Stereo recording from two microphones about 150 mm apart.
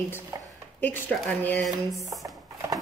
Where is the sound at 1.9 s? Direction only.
20° right (ahead or behind).